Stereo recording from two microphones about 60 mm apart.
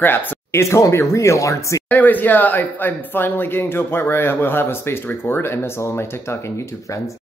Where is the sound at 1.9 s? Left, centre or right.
Left.